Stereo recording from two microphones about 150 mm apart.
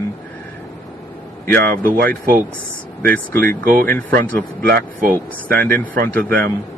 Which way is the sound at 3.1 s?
10° left (ahead or behind).